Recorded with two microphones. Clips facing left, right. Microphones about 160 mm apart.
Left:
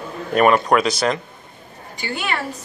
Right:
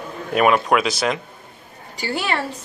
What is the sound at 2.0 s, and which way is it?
Speech, 35° right (ahead or behind).